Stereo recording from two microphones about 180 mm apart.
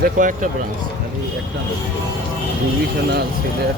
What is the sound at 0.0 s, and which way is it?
Speech, 50° right (ahead or behind).